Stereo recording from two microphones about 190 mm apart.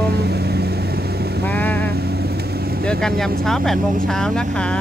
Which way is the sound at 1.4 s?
10° left (ahead or behind).